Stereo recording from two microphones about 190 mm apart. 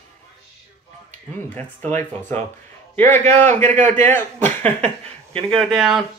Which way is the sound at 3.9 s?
10° left (ahead or behind).